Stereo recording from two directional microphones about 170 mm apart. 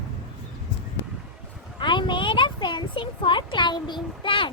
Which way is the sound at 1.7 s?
30° left (ahead or behind).